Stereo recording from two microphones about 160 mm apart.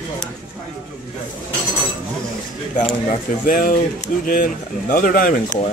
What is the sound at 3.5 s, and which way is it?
Speech, 60° left (ahead or behind).